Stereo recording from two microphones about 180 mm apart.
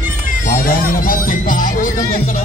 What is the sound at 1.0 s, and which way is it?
Speech, 50° left (ahead or behind).